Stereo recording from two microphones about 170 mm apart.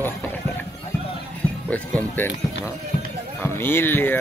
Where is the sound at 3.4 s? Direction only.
15° left (ahead or behind).